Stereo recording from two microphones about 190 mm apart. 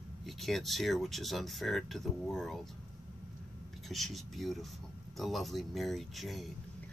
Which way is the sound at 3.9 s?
Centre (ahead or behind).